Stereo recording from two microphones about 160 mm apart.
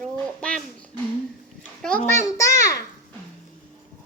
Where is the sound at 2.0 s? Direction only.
15° left (ahead or behind).